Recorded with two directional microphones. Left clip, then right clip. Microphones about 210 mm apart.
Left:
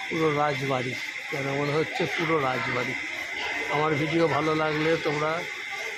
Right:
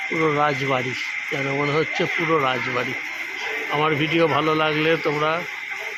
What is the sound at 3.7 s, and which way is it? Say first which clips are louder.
Speech: right 5 dB; 10° right (ahead or behind).